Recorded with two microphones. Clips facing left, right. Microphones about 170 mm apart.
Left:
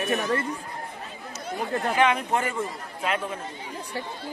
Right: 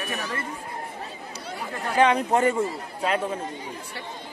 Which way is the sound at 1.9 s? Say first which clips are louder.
Right 5 dB; 30° right (ahead or behind).